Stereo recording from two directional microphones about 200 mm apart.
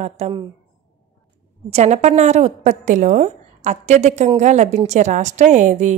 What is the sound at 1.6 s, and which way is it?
A woman's voice, 35° right (ahead or behind).